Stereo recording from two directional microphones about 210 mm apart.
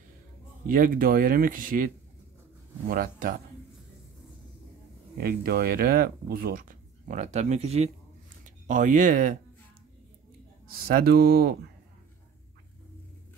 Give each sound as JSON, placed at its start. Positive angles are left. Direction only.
{"t": 0.7, "sound": "speech", "side_deg": -40}
{"t": 2.9, "sound": "speech", "side_deg": -40}
{"t": 5.1, "sound": "speech", "side_deg": -45}
{"t": 10.9, "sound": "speech", "side_deg": -45}